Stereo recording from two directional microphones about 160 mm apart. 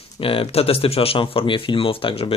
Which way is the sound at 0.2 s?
35° left (ahead or behind).